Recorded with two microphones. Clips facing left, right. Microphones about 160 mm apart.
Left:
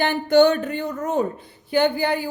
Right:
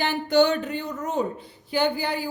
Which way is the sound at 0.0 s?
55° left (ahead or behind).